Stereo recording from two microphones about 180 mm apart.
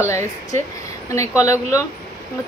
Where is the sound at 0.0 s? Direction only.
15° left (ahead or behind).